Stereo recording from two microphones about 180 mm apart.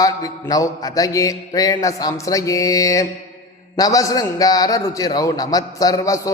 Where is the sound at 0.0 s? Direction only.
20° left (ahead or behind).